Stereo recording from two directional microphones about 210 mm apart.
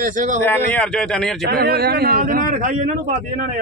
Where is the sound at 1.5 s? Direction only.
50° right (ahead or behind).